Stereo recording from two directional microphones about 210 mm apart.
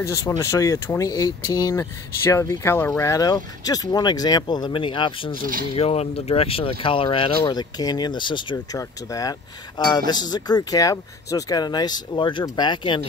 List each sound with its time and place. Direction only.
0.0 s speech: 15° left (ahead or behind)